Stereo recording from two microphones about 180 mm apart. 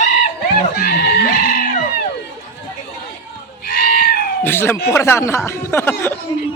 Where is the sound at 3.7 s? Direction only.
55° left (ahead or behind).